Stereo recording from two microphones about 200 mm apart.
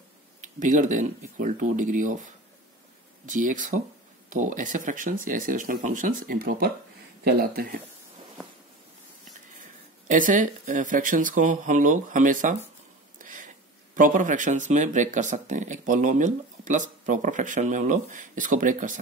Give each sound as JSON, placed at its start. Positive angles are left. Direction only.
{"t": 0.4, "sound": "speech", "side_deg": -40}
{"t": 3.3, "sound": "speech", "side_deg": -40}
{"t": 10.0, "sound": "speech", "side_deg": -40}
{"t": 13.2, "sound": "a sound", "side_deg": -40}
{"t": 13.9, "sound": "speech", "side_deg": -40}